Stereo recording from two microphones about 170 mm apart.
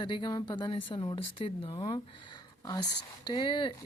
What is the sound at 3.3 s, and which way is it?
Speech, 30° left (ahead or behind).